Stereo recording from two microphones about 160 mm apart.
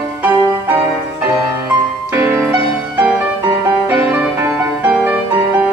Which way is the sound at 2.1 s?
15° right (ahead or behind).